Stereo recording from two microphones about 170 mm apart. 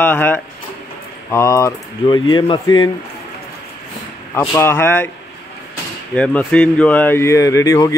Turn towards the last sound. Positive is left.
turn(degrees=20)  # may be behind; listen again after turning